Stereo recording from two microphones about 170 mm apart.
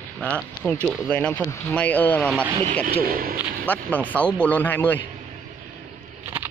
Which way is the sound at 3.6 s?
10° left (ahead or behind).